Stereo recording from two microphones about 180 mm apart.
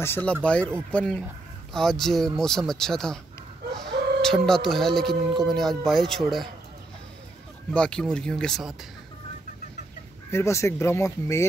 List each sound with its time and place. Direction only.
0.0 s speech: 10° left (ahead or behind)
3.7 s chicken: centre (ahead or behind)
5.4 s speech: centre (ahead or behind)
7.7 s speech: 5° left (ahead or behind)
10.3 s speech: 15° left (ahead or behind)